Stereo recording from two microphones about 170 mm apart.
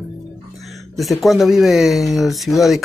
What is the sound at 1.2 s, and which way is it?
Speech, centre (ahead or behind).